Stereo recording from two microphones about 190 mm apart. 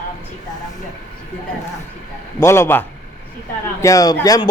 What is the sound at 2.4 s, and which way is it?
A man's voice, 15° left (ahead or behind).